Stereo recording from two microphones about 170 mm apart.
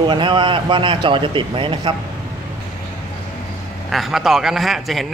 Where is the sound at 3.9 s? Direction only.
Centre (ahead or behind).